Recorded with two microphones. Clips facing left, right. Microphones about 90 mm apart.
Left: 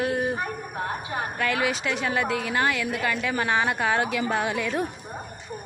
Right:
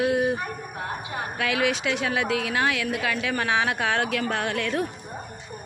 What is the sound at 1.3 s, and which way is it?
A woman's voice, centre (ahead or behind).